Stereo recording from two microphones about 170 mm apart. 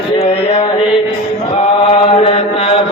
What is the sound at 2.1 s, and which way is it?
Chant, 35° left (ahead or behind).